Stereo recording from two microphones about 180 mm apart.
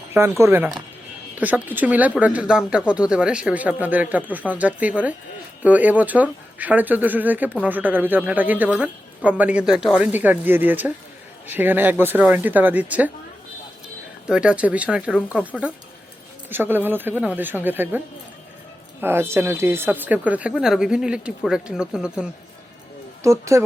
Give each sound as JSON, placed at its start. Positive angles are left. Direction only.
{"t": 0.1, "sound": "speech", "side_deg": -15}
{"t": 14.3, "sound": "speech", "side_deg": -5}
{"t": 23.2, "sound": "speech", "side_deg": -15}